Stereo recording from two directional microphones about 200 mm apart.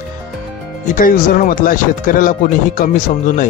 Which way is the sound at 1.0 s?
45° left (ahead or behind).